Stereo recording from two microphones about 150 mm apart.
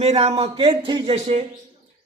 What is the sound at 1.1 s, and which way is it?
Speech, 50° right (ahead or behind).